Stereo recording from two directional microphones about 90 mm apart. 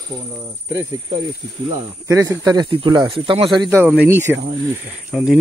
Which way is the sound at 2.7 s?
65° right (ahead or behind).